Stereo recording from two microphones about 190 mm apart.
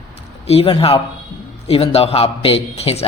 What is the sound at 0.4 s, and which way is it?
A woman's voice, 30° left (ahead or behind).